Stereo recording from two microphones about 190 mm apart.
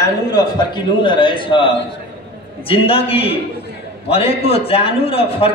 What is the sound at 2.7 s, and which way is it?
A man's voice, 30° left (ahead or behind).